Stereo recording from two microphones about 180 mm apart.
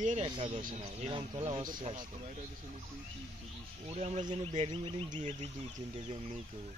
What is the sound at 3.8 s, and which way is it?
Speech, 35° right (ahead or behind).